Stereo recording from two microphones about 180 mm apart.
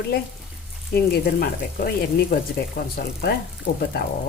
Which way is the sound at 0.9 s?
60° left (ahead or behind).